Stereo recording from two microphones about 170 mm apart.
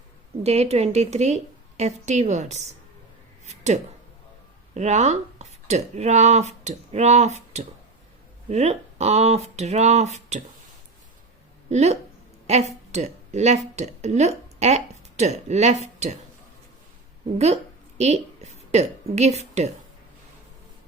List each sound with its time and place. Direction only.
0.4 s a woman's voice: 40° right (ahead or behind)
3.4 s a sound: 40° right (ahead or behind)
4.7 s a woman's voice: 40° right (ahead or behind)
11.7 s a woman's voice: 40° right (ahead or behind)
17.3 s a woman's voice: 40° right (ahead or behind)